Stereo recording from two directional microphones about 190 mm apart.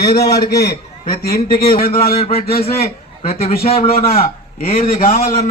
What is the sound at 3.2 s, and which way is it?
Speech, 30° left (ahead or behind).